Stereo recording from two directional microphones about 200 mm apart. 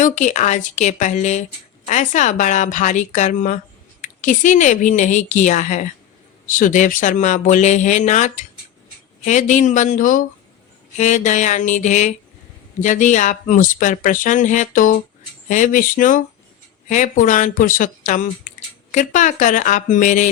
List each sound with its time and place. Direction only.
0.0 s speech: 40° left (ahead or behind)